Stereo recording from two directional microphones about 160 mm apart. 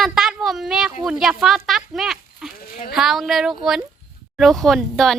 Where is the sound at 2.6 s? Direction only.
60° left (ahead or behind).